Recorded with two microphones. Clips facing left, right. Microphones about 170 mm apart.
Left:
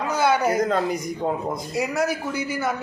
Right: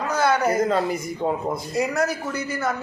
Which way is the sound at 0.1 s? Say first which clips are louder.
Even; 5° left (ahead or behind).